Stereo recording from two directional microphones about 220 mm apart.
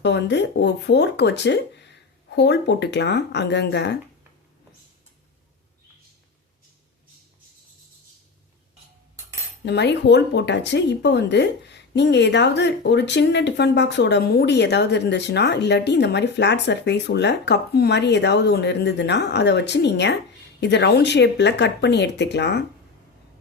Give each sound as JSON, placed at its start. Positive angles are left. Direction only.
{"t": 0.0, "sound": "speech", "side_deg": 50}
{"t": 9.6, "sound": "speech", "side_deg": 50}